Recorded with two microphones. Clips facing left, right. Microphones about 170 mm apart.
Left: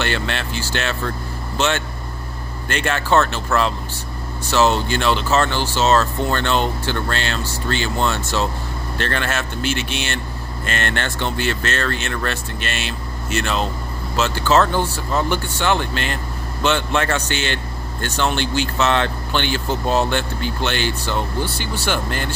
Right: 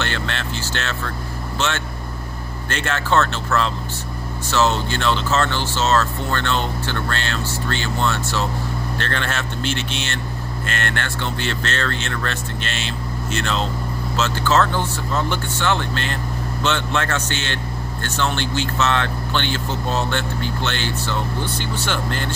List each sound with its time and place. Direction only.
0.0 s speech: 15° left (ahead or behind)
2.7 s speech: 15° left (ahead or behind)